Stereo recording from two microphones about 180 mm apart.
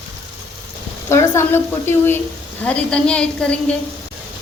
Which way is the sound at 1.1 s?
15° left (ahead or behind).